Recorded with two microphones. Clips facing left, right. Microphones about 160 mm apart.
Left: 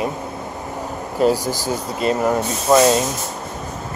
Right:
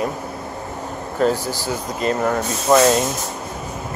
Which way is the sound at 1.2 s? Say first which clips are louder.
Left 2 dB; 10° left (ahead or behind).